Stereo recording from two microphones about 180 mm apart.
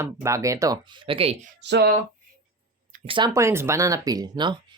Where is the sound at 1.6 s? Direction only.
70° right (ahead or behind).